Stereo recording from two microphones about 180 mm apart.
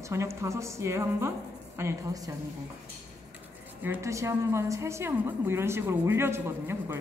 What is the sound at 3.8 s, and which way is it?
A woman's voice, 15° right (ahead or behind).